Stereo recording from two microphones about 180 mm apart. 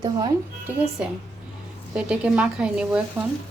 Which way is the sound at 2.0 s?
5° right (ahead or behind).